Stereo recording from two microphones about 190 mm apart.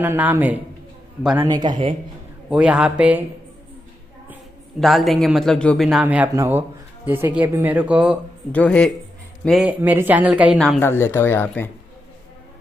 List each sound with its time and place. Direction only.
0.0 s speech: 10° right (ahead or behind)
1.5 s speech: 20° right (ahead or behind)
2.5 s a man's voice: 5° right (ahead or behind)
4.7 s a man's voice: centre (ahead or behind)
8.5 s speech: 5° left (ahead or behind)
10.8 s speech: 10° left (ahead or behind)